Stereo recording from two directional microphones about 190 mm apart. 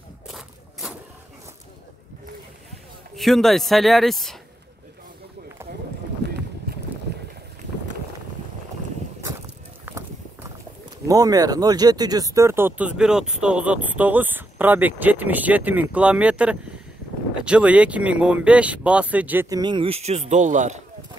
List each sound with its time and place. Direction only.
0.3 s a sound: 5° right (ahead or behind)
3.2 s speech: centre (ahead or behind)
6.2 s boat: 60° right (ahead or behind)
9.8 s clip-clop: 15° right (ahead or behind)
11.1 s speech: 20° right (ahead or behind)
19.5 s a man's voice: 25° right (ahead or behind); by 20.8 s 40° right (ahead or behind)